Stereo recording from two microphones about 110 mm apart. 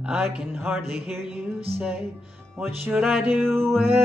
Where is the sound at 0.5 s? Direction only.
20° right (ahead or behind).